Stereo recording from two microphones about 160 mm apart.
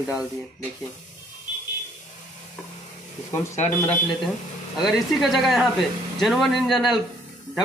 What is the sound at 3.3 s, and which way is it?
Speech, 15° left (ahead or behind).